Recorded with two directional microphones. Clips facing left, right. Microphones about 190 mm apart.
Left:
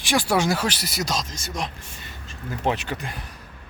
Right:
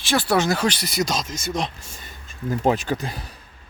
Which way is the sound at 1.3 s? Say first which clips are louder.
Right 5 dB; 25° right (ahead or behind).